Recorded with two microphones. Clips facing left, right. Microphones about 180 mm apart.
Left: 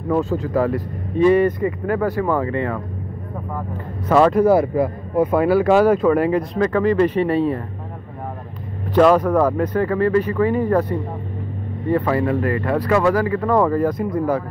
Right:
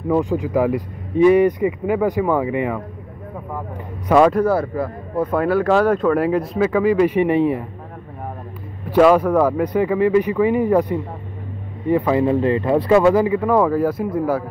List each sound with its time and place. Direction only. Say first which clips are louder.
0.1 s speech: right 1 dB; 15° right (ahead or behind)
4.1 s speech: right 1 dB; centre (ahead or behind)
4.5 s speech: left 4 dB; 15° left (ahead or behind); by 7.6 s 15° right (ahead or behind)
8.9 s speech: right 1 dB; 10° right (ahead or behind)
13.4 s speech: right 1 dB; 5° right (ahead or behind)